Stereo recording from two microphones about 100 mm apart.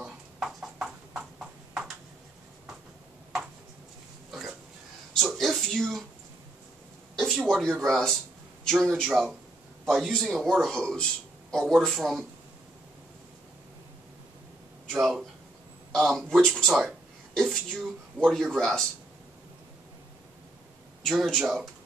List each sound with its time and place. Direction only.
0.0 s clip-clop: 5° right (ahead or behind)
4.3 s burping: 5° right (ahead or behind)
5.3 s speech: centre (ahead or behind)
7.2 s a man's voice: centre (ahead or behind)
14.9 s a man's voice: centre (ahead or behind)
21.0 s a man's voice: centre (ahead or behind)